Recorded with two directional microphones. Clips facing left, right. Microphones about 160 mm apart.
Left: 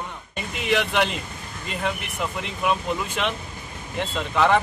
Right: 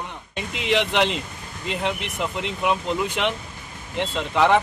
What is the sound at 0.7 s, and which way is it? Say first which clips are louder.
Speech: right 1 dB; 20° right (ahead or behind).